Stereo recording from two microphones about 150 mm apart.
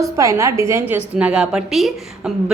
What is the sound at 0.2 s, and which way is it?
A woman's voice, 20° right (ahead or behind).